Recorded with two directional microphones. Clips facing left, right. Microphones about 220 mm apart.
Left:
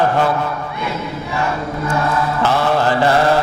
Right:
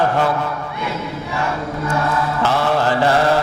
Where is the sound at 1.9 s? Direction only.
20° left (ahead or behind).